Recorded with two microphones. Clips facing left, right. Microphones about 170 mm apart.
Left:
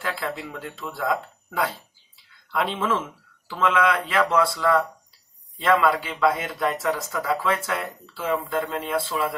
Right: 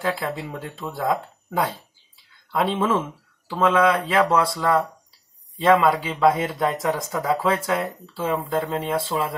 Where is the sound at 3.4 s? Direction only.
25° right (ahead or behind).